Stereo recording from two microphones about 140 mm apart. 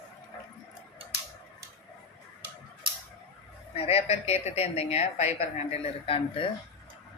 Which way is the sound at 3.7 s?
45° left (ahead or behind).